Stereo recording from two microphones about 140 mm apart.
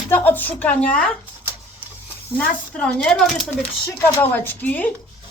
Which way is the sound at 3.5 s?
15° left (ahead or behind).